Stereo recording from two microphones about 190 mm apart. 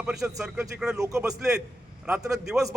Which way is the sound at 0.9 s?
15° right (ahead or behind).